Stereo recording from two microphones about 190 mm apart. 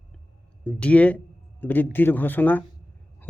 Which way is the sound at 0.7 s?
5° left (ahead or behind).